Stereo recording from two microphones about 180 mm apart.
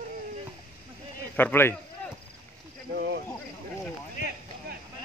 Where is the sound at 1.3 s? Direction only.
10° left (ahead or behind).